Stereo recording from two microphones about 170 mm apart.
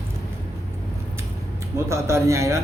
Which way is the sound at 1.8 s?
15° right (ahead or behind).